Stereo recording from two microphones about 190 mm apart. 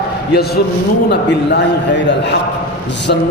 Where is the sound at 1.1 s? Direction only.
60° left (ahead or behind).